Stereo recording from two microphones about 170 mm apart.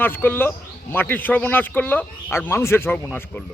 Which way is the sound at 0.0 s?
10° left (ahead or behind).